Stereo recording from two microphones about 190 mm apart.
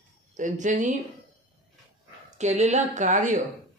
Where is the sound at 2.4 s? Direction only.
35° right (ahead or behind).